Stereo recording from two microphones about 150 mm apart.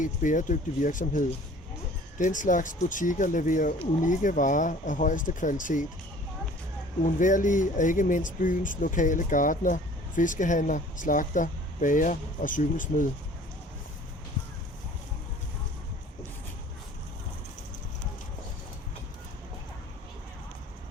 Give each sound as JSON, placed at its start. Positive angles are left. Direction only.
{"t": 0.0, "sound": "speech", "side_deg": 60}
{"t": 7.0, "sound": "speech", "side_deg": 60}